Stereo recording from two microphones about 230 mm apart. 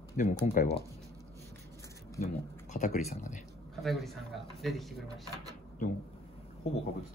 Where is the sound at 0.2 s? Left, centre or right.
Left.